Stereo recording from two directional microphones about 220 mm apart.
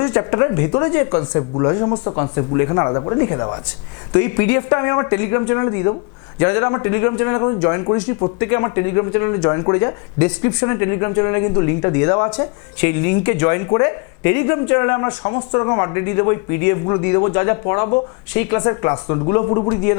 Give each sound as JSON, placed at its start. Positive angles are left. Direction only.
{"t": 0.0, "sound": "speech", "side_deg": 20}